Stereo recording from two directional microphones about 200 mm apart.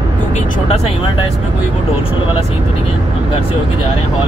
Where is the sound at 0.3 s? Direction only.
35° left (ahead or behind).